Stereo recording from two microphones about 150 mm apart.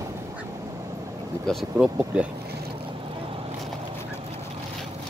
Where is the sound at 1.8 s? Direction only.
20° right (ahead or behind).